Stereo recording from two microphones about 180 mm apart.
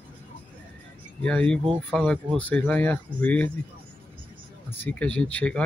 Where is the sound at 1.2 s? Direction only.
5° left (ahead or behind).